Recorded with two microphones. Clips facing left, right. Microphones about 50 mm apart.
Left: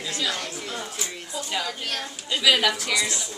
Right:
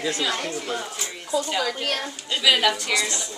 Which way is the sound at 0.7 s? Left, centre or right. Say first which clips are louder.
Right 2 dB; centre.